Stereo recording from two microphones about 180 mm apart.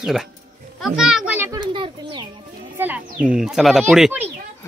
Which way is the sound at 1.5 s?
25° right (ahead or behind).